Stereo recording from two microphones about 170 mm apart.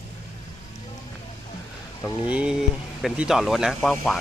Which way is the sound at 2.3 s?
10° right (ahead or behind).